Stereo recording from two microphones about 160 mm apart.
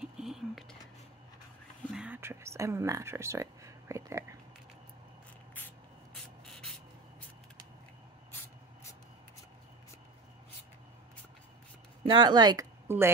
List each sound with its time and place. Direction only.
0.0 s a sound: 5° right (ahead or behind)
2.0 s whispering: 10° right (ahead or behind)
12.0 s a woman's voice: 30° right (ahead or behind)